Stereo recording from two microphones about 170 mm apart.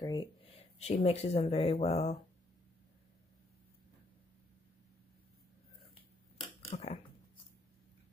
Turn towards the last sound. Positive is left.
turn(degrees=35)  # may be behind; listen again after turning